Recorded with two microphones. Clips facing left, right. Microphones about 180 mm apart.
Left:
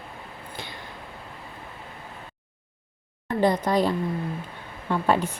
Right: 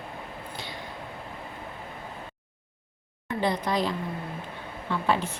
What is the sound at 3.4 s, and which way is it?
A woman's voice, 45° left (ahead or behind).